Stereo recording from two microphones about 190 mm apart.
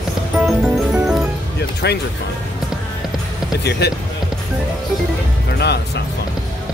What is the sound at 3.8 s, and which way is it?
Speech, 60° left (ahead or behind).